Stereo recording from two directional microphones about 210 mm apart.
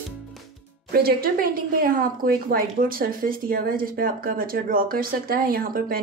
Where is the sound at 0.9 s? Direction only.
45° right (ahead or behind).